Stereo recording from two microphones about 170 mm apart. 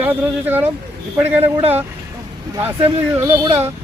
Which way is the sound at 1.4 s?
40° right (ahead or behind).